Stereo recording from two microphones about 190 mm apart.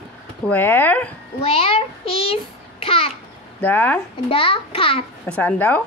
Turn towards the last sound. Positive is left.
turn(degrees=10)  # may be behind; listen again after turning